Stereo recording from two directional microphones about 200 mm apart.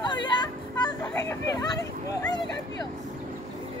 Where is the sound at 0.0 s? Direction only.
20° left (ahead or behind).